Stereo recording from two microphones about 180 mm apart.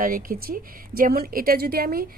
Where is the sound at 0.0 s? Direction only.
50° right (ahead or behind).